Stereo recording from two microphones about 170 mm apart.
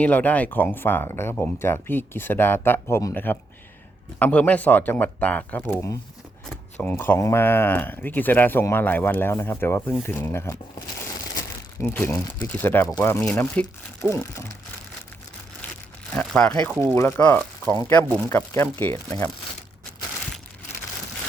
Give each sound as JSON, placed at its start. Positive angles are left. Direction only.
{"t": 0.0, "sound": "speech", "side_deg": 10}
{"t": 11.3, "sound": "crumpling", "side_deg": 15}
{"t": 12.5, "sound": "speech", "side_deg": 10}
{"t": 16.1, "sound": "speech", "side_deg": 5}